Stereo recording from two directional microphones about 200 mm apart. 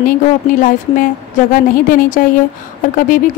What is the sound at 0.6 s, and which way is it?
A woman's voice, 40° left (ahead or behind).